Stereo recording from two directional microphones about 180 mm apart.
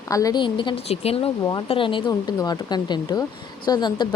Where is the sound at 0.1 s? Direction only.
20° left (ahead or behind).